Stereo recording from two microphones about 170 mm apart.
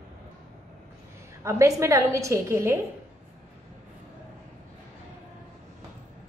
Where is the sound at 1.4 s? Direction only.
15° right (ahead or behind).